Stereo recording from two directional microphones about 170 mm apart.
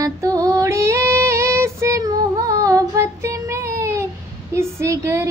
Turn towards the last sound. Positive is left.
turn(degrees=-15)  # may be behind; listen again after turning